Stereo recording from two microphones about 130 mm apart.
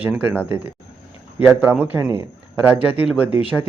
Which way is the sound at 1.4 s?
15° right (ahead or behind).